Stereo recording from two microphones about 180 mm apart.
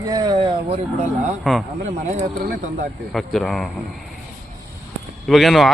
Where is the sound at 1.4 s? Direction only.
Centre (ahead or behind).